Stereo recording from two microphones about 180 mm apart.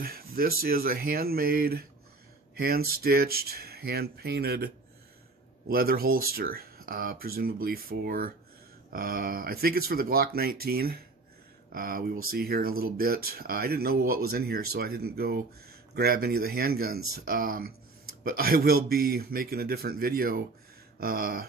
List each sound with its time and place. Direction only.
0.0 s speech: 55° right (ahead or behind)